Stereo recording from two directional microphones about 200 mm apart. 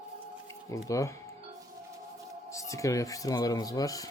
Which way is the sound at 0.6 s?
15° left (ahead or behind).